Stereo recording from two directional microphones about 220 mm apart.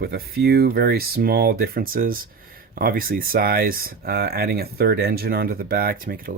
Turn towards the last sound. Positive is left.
turn(degrees=-40)  # may be behind; listen again after turning